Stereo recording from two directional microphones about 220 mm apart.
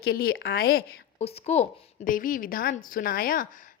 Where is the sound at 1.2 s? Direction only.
30° left (ahead or behind).